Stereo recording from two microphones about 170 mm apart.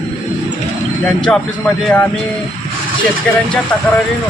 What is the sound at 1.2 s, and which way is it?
Speech, 5° left (ahead or behind).